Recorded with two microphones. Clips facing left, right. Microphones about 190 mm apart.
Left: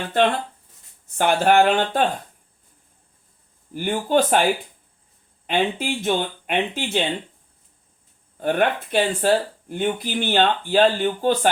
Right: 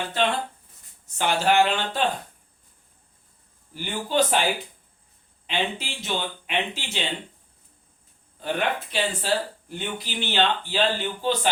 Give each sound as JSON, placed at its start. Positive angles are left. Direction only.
{"t": 1.0, "sound": "speech", "side_deg": 55}
{"t": 3.8, "sound": "speech", "side_deg": 50}
{"t": 5.5, "sound": "speech", "side_deg": 50}
{"t": 8.4, "sound": "speech", "side_deg": 55}